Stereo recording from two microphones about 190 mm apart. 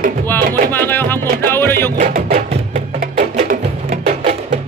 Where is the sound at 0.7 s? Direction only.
10° left (ahead or behind).